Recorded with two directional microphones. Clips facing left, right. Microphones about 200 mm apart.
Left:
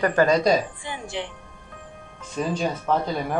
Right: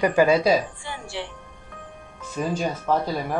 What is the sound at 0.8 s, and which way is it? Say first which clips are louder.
Music: left 2 dB; 15° left (ahead or behind).